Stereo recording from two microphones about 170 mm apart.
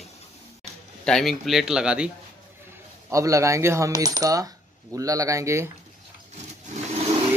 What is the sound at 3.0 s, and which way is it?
Speech, 20° right (ahead or behind).